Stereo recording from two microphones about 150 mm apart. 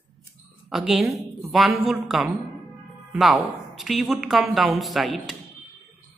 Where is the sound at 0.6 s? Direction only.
Centre (ahead or behind).